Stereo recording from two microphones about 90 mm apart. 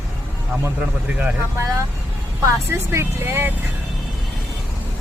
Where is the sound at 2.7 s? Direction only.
30° right (ahead or behind).